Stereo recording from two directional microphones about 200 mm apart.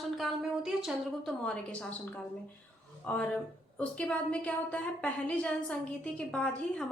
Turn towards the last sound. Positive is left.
turn(degrees=5)  # may be behind; listen again after turning